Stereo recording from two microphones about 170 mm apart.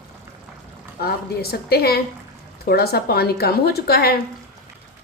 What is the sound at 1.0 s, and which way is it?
Speech, 65° left (ahead or behind).